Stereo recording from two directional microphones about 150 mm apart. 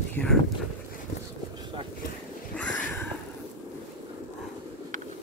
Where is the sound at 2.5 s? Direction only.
10° left (ahead or behind).